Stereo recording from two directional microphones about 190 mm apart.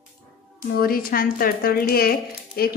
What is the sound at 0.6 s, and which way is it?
Speech, 50° left (ahead or behind).